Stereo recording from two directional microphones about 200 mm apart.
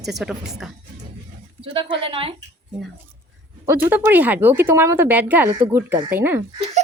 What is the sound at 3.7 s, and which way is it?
Speech, 10° right (ahead or behind).